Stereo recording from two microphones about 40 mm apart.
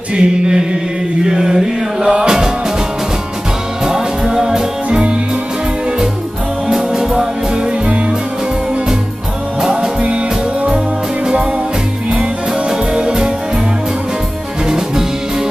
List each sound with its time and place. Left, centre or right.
0.1 s chant: right
1.2 s mantra: centre
2.0 s music: centre
3.8 s music: centre
6.7 s music: centre
9.6 s music: centre
10.0 s music: right
12.1 s music: right